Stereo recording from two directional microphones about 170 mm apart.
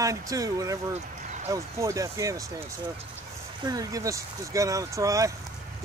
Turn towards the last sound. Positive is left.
turn(degrees=-20)  # may be behind; listen again after turning